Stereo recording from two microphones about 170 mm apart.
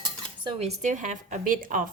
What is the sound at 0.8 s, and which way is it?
A woman's voice, 45° right (ahead or behind).